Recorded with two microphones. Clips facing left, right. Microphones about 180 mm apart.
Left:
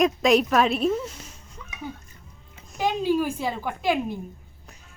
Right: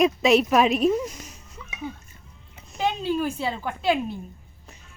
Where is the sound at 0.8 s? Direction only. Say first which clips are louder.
Right 3 dB; 10° right (ahead or behind).